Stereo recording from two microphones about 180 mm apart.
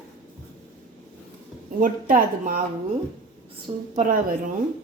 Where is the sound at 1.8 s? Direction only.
50° right (ahead or behind).